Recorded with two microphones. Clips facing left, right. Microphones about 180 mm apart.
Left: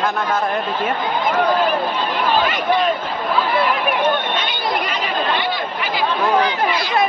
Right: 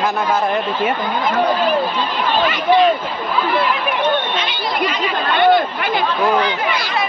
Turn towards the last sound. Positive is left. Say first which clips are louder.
# right 10 dB
turn(degrees=-55)  # may be behind; listen again after turning